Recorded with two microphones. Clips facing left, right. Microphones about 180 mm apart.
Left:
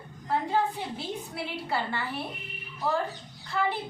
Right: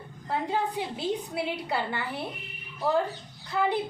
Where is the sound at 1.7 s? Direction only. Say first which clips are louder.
Left 3 dB; 20° right (ahead or behind).